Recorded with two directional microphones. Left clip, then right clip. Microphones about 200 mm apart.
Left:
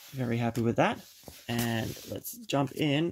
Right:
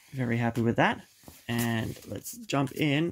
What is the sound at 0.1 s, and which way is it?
Speech, 15° right (ahead or behind).